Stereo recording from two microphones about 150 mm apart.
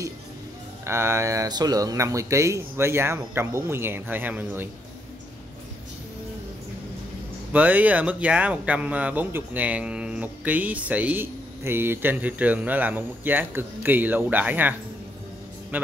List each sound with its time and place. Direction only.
0.8 s speech: 15° right (ahead or behind)
7.5 s speech: 10° right (ahead or behind)